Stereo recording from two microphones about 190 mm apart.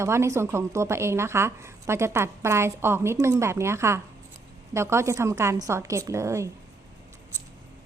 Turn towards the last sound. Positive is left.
turn(degrees=-15)  # may be behind; listen again after turning